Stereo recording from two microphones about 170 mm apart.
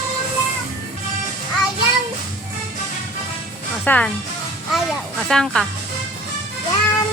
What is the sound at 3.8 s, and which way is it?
Speech, 10° left (ahead or behind).